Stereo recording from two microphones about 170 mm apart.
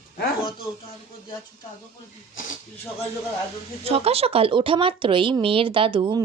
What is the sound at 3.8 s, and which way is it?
Speech, 35° right (ahead or behind).